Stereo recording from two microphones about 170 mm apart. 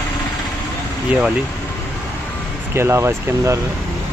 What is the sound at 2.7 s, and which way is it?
Speech, 15° right (ahead or behind).